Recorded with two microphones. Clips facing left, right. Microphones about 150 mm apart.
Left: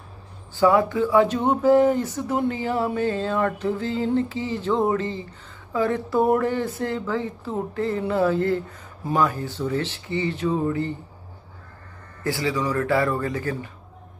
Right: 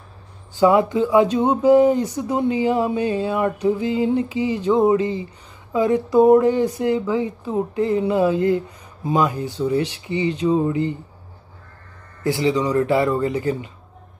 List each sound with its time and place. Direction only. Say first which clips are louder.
0.6 s speech: right 3 dB; 20° right (ahead or behind)
12.2 s speech: right 5 dB; 20° right (ahead or behind)